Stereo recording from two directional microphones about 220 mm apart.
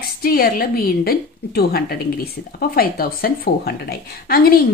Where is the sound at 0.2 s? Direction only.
40° left (ahead or behind).